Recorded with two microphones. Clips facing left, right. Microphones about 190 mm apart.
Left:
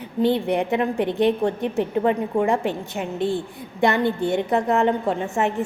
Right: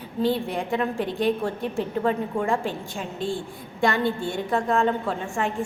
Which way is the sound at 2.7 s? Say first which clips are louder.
Left 5 dB; 65° left (ahead or behind).